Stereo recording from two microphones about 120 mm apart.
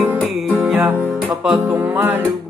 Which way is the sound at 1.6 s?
20° right (ahead or behind).